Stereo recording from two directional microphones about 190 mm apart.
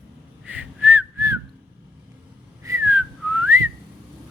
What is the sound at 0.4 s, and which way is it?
Whistling, 10° right (ahead or behind).